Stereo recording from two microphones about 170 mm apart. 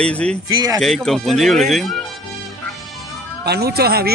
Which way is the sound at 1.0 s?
Centre (ahead or behind).